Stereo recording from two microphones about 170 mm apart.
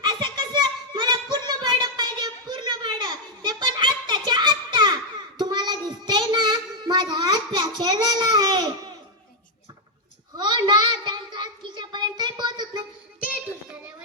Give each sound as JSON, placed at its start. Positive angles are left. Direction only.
{"t": 0.0, "sound": "a sound", "side_deg": -25}
{"t": 4.3, "sound": "child singing", "side_deg": -25}
{"t": 10.3, "sound": "child singing", "side_deg": -25}